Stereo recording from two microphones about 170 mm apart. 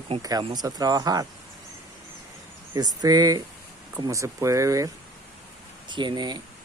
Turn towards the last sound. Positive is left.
turn(degrees=-25)  # may be behind; listen again after turning